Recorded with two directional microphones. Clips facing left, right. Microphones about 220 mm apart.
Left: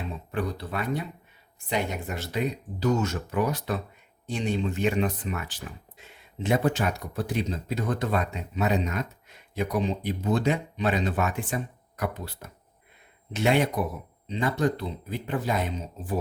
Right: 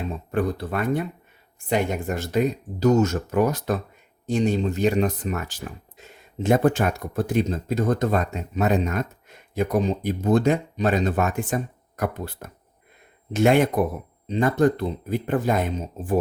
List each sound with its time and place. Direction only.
0.3 s speech: 50° right (ahead or behind)